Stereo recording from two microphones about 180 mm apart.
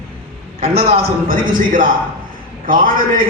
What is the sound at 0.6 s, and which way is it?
A man's voice, 55° right (ahead or behind).